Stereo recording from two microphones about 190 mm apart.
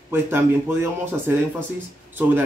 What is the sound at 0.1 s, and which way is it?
Speech, 10° right (ahead or behind).